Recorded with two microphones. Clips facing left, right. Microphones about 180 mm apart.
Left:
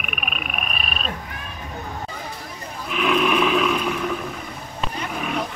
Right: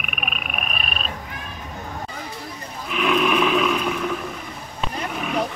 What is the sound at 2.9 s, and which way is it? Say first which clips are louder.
Roar: even; centre (ahead or behind).